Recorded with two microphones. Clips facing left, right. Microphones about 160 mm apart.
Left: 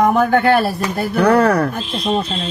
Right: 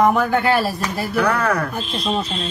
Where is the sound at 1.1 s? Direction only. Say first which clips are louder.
Left 7 dB; 35° left (ahead or behind).